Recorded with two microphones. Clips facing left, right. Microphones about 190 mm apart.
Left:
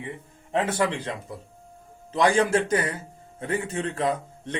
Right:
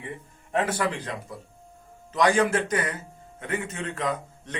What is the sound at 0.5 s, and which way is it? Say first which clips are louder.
Speech: left 2 dB; 25° left (ahead or behind).